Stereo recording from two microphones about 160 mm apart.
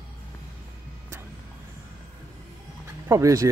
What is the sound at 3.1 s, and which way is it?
Speech, 20° right (ahead or behind).